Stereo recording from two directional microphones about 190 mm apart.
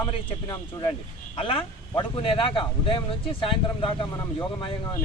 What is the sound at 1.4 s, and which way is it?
Speech, 25° left (ahead or behind).